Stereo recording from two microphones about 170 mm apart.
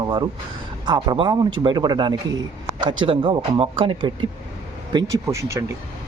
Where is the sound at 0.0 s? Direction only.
25° right (ahead or behind).